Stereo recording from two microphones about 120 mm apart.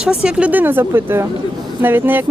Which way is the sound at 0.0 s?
5° right (ahead or behind).